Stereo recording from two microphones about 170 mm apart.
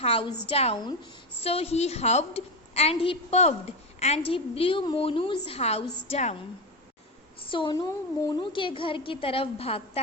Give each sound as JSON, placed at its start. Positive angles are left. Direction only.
{"t": 0.0, "sound": "a woman's voice", "side_deg": 35}
{"t": 7.5, "sound": "a woman's voice", "side_deg": 30}